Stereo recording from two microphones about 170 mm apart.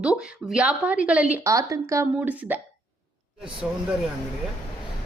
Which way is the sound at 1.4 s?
20° right (ahead or behind).